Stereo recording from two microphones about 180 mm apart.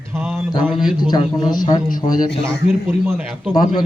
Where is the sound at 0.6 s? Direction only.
5° right (ahead or behind).